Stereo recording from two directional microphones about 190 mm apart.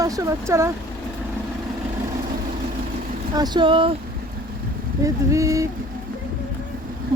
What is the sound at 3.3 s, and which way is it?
Speech, 20° right (ahead or behind).